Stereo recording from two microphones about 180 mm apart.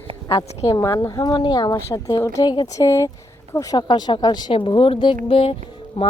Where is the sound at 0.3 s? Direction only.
20° left (ahead or behind).